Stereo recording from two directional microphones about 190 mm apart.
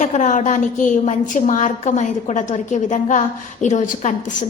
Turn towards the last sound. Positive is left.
turn(degrees=40)  # may be behind; listen again after turning